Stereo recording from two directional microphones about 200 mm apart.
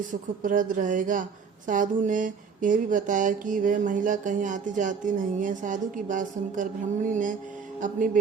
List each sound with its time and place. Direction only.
0.0 s speech: 40° right (ahead or behind)